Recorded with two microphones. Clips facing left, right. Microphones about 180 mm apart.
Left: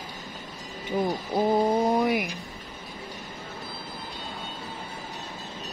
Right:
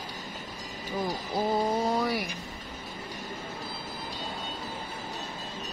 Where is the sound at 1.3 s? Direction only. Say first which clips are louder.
Left 5 dB; 20° left (ahead or behind).